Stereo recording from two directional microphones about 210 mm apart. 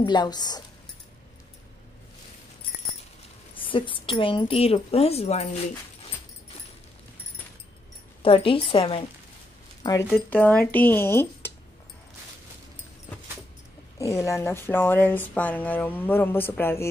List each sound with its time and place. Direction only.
0.0 s a woman's voice: 20° left (ahead or behind)
3.5 s a woman's voice: 25° left (ahead or behind)
8.2 s a woman's voice: 25° left (ahead or behind)
10.3 s speech: 10° left (ahead or behind)
13.9 s speech: 15° left (ahead or behind)